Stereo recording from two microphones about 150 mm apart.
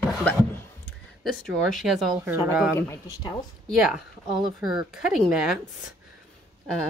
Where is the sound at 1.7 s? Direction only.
Centre (ahead or behind).